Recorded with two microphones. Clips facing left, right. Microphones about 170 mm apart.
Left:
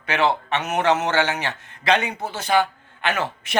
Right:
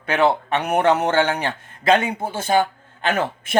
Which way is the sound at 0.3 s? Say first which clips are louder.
Right 3 dB; 35° right (ahead or behind).